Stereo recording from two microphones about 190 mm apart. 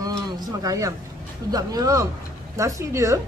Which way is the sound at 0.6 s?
15° right (ahead or behind).